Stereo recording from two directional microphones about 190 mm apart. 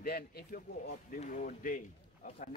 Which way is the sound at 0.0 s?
55° left (ahead or behind).